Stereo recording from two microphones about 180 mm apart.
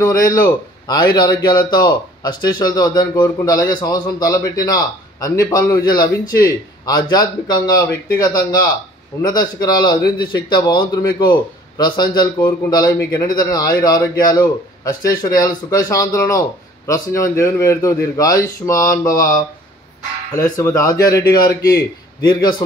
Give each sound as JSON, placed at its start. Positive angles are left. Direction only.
{"t": 0.0, "sound": "a man's voice", "side_deg": 20}
{"t": 20.5, "sound": "a man's voice", "side_deg": 20}